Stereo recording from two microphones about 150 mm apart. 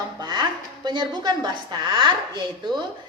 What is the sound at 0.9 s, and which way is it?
A woman's voice, 30° right (ahead or behind).